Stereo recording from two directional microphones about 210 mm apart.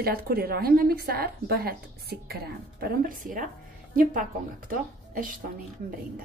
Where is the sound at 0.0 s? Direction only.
45° right (ahead or behind).